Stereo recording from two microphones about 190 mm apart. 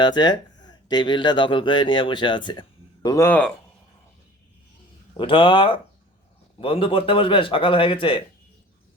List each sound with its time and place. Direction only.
0.0 s speech: 25° left (ahead or behind)
5.1 s a man's voice: 25° left (ahead or behind)